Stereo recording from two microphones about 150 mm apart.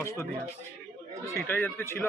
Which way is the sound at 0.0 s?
15° left (ahead or behind).